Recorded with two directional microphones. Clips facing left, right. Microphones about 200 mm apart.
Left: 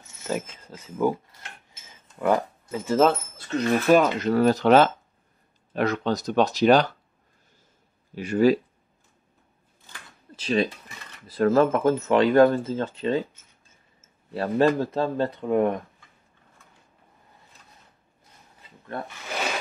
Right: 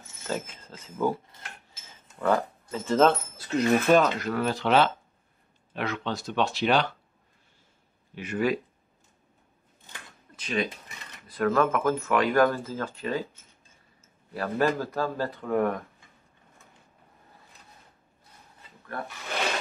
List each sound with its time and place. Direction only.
0.3 s speech: 15° left (ahead or behind)
4.3 s speech: 40° left (ahead or behind)
8.1 s speech: 30° left (ahead or behind)
10.3 s speech: 30° left (ahead or behind)
14.3 s speech: 25° left (ahead or behind)